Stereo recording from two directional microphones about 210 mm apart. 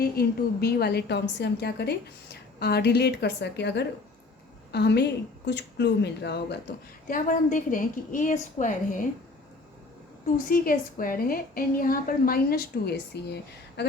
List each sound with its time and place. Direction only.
0.0 s a woman's voice: 45° left (ahead or behind)
7.1 s a woman's voice: 40° left (ahead or behind)
10.3 s a woman's voice: 40° left (ahead or behind)